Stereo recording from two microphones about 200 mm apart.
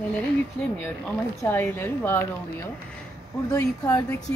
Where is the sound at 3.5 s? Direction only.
15° left (ahead or behind).